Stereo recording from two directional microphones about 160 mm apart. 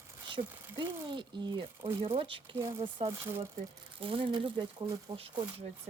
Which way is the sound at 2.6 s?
20° right (ahead or behind).